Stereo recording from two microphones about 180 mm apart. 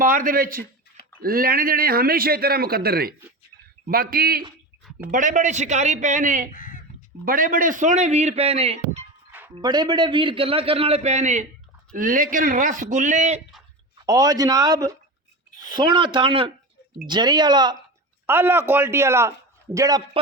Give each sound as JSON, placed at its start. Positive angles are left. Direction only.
{"t": 0.0, "sound": "a man's voice", "side_deg": -50}
{"t": 5.1, "sound": "speech", "side_deg": -45}
{"t": 6.5, "sound": "speech", "side_deg": 50}
{"t": 7.3, "sound": "a man's voice", "side_deg": -50}
{"t": 9.6, "sound": "a man's voice", "side_deg": -25}
{"t": 14.0, "sound": "speech", "side_deg": -20}
{"t": 18.3, "sound": "a man's voice", "side_deg": -10}